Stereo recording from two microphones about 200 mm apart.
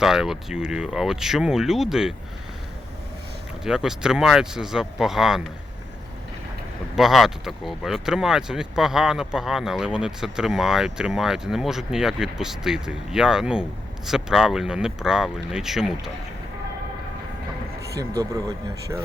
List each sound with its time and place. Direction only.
0.0 s speech: centre (ahead or behind)
3.6 s speech: 5° right (ahead or behind)
6.9 s speech: centre (ahead or behind)
18.2 s speech: 15° right (ahead or behind)